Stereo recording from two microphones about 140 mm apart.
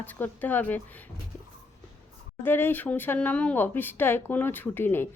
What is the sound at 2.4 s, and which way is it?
A woman's voice, 15° left (ahead or behind).